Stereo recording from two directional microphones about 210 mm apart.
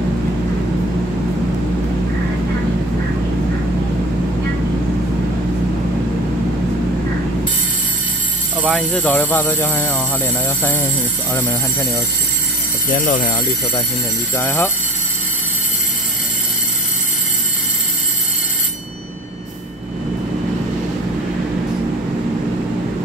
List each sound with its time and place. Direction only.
8.6 s speech: 5° left (ahead or behind)
13.0 s speech: 40° left (ahead or behind)
14.3 s speech: 15° left (ahead or behind)